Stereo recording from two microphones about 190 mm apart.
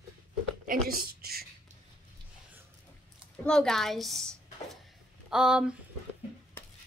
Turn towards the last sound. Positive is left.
turn(degrees=-5)  # may be behind; listen again after turning